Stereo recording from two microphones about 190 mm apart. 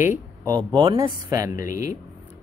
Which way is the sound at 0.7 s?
25° right (ahead or behind).